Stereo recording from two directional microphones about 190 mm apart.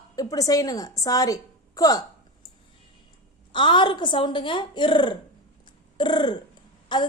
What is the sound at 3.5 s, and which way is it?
A woman's voice, 25° left (ahead or behind).